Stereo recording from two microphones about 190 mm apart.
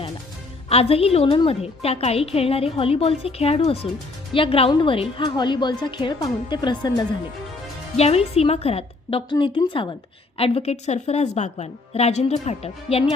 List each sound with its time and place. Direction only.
0.7 s a woman's voice: 30° left (ahead or behind)
7.9 s a woman's voice: 35° left (ahead or behind)